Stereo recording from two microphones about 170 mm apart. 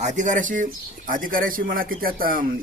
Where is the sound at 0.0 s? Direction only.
45° right (ahead or behind).